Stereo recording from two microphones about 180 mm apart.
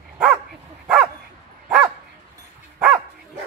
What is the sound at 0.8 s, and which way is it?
Dog, 5° right (ahead or behind).